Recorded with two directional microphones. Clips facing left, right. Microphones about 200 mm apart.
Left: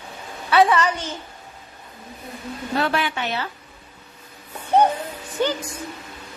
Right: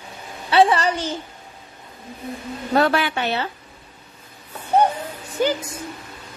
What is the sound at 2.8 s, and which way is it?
Speech, 40° right (ahead or behind).